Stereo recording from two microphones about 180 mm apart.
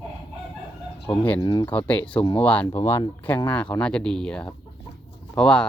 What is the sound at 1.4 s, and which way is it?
Speech, 25° left (ahead or behind).